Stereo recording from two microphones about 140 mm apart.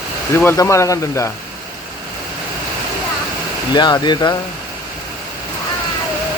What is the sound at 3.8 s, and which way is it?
Speech, 30° left (ahead or behind).